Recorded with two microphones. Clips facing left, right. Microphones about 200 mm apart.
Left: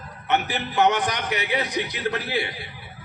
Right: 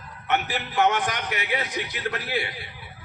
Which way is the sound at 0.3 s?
20° left (ahead or behind).